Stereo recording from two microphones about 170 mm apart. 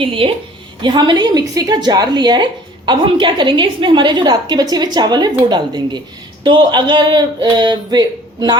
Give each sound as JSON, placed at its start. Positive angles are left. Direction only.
{"t": 0.0, "sound": "a woman's voice", "side_deg": -30}